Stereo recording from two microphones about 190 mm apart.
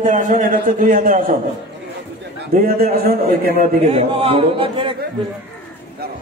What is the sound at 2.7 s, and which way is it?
Speech, 50° right (ahead or behind).